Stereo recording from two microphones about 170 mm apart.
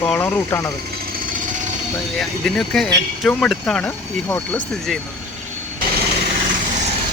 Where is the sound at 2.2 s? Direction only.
5° left (ahead or behind).